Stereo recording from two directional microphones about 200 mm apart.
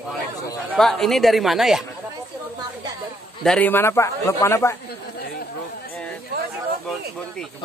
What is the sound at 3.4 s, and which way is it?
Speech, 5° left (ahead or behind).